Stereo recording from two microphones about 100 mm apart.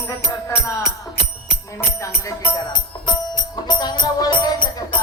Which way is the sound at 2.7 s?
45° left (ahead or behind).